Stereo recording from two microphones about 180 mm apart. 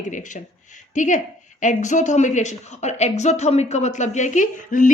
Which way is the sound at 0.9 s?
45° left (ahead or behind).